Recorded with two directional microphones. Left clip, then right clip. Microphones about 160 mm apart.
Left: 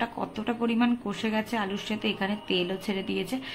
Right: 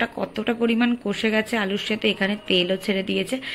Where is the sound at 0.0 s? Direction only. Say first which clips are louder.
Right 6 dB; 20° right (ahead or behind).